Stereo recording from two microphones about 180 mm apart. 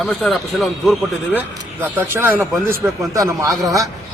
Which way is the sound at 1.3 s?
10° right (ahead or behind).